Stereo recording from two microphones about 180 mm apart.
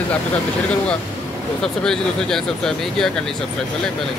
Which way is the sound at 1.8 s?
5° left (ahead or behind).